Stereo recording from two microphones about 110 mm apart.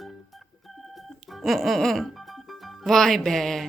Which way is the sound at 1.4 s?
Centre (ahead or behind).